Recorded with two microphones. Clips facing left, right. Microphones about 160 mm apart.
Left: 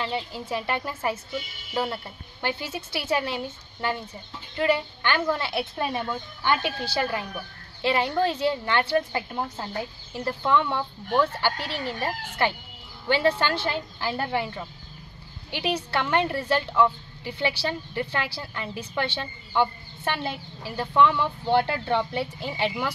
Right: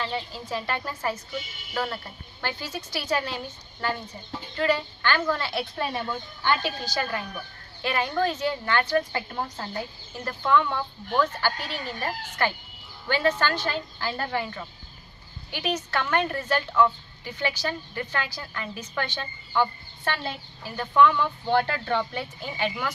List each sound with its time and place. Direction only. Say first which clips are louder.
0.0 s a woman's voice: left 1 dB; 25° left (ahead or behind)
2.4 s a woman's voice: left 3 dB; 25° left (ahead or behind)
5.9 s speech: left 1 dB; 10° left (ahead or behind)
6.8 s a woman's voice: left 3 dB; 25° left (ahead or behind)
7.1 s speech: left 2 dB; 15° left (ahead or behind)
7.8 s a woman's voice: left 2 dB; 25° left (ahead or behind)
9.1 s speech: left 1 dB; 10° left (ahead or behind)
10.5 s a woman's voice: right 2 dB; 25° left (ahead or behind)
20.7 s a woman's voice: right 1 dB; 25° left (ahead or behind)